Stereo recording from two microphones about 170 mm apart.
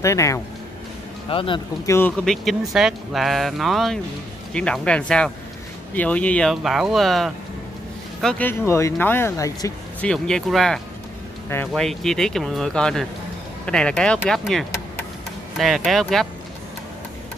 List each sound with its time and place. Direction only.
0.0 s speech: 20° left (ahead or behind)
1.3 s speech: 30° left (ahead or behind)
1.9 s speech: 15° left (ahead or behind)
2.2 s speech: centre (ahead or behind); by 9.8 s 20° left (ahead or behind)
9.9 s speech: 5° left (ahead or behind)
11.4 s speech: 15° left (ahead or behind)
11.7 s speech: centre (ahead or behind)